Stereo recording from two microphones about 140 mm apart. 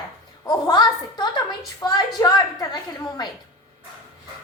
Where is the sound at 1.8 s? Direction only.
30° left (ahead or behind).